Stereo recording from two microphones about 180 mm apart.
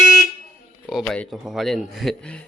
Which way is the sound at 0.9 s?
5° left (ahead or behind).